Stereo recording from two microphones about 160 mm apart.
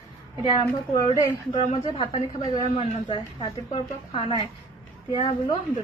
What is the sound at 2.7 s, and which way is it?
Speech, 30° left (ahead or behind).